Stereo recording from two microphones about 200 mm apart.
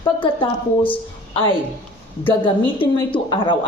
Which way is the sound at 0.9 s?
25° left (ahead or behind).